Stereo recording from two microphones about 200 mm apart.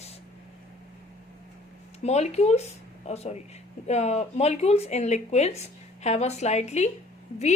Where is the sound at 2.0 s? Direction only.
35° left (ahead or behind).